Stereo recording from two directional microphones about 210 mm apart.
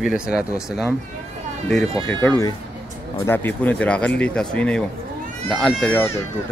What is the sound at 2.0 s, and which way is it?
Speech, 5° left (ahead or behind).